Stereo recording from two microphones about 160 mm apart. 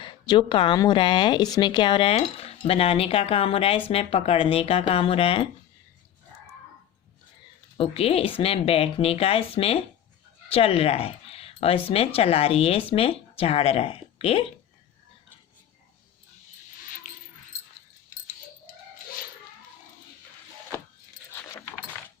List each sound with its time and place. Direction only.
0.0 s speech: 30° left (ahead or behind)
7.8 s speech: 35° left (ahead or behind)